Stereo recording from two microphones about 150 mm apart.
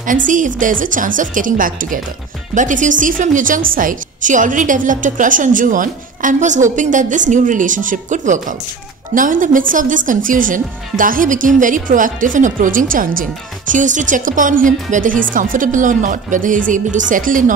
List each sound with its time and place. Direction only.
0.0 s speech: 60° right (ahead or behind)